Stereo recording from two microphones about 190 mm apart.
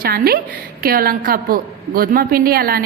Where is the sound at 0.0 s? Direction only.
50° right (ahead or behind).